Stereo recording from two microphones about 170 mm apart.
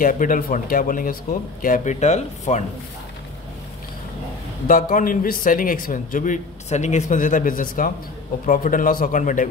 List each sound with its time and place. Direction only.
0.0 s a man's voice: 55° left (ahead or behind)
4.6 s a man's voice: 55° left (ahead or behind)